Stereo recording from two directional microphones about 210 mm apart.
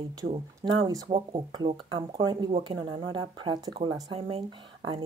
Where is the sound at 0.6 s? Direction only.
20° right (ahead or behind).